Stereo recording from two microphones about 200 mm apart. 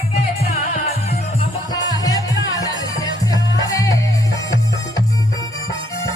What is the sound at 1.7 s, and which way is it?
Music, 20° left (ahead or behind).